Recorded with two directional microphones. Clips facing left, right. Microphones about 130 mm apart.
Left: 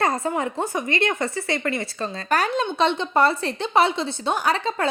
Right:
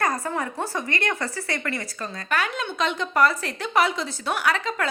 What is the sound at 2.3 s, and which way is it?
Speech, 40° left (ahead or behind).